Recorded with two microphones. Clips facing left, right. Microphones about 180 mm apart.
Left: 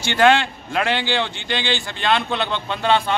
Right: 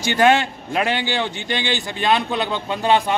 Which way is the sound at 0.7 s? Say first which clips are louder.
Even; 15° right (ahead or behind).